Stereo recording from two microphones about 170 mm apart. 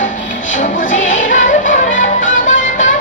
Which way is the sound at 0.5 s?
50° left (ahead or behind).